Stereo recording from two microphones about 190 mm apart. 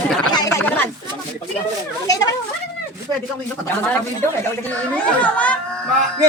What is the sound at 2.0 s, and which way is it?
Speech, 20° left (ahead or behind).